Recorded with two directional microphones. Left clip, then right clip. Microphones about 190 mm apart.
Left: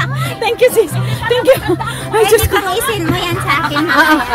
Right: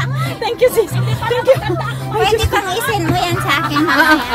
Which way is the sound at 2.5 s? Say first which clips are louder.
Left 2 dB; centre (ahead or behind).